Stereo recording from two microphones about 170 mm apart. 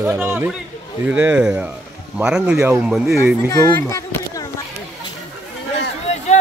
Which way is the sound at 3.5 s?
20° left (ahead or behind).